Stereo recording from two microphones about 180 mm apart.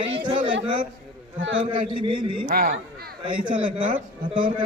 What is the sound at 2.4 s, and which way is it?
Speech, 50° right (ahead or behind).